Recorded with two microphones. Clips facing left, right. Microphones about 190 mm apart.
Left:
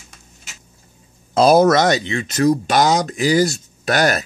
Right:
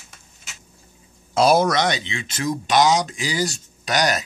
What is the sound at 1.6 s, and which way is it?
Speech, 45° left (ahead or behind).